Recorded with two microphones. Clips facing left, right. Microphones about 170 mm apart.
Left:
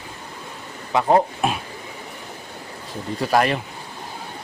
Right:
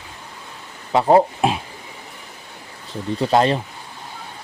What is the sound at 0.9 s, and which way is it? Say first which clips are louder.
Speech: right 3 dB; 15° right (ahead or behind).